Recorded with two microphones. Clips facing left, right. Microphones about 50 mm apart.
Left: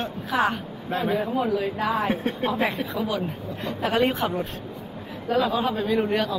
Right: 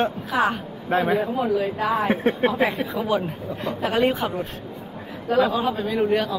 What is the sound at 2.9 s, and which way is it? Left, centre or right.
Speech, centre.